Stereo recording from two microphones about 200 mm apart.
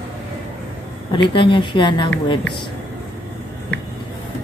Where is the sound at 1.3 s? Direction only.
25° left (ahead or behind).